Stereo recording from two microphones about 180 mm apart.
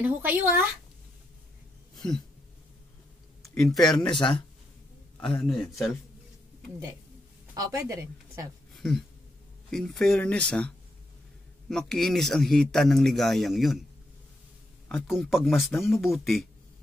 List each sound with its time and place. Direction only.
0.0 s speech: 10° right (ahead or behind)
2.0 s a sound: 5° left (ahead or behind)
3.6 s speech: 20° left (ahead or behind)
5.4 s speech: centre (ahead or behind)
7.5 s a woman's voice: 20° right (ahead or behind)
8.7 s a sound: centre (ahead or behind)
9.7 s speech: centre (ahead or behind)
11.7 s speech: centre (ahead or behind)
14.9 s speech: centre (ahead or behind)